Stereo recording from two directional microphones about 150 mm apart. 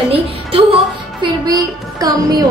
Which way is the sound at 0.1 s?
40° right (ahead or behind).